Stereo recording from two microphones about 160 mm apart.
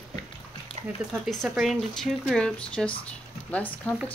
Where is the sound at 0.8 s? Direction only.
40° right (ahead or behind).